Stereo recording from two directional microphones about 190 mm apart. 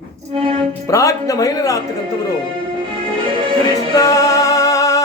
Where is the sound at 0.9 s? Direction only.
15° left (ahead or behind).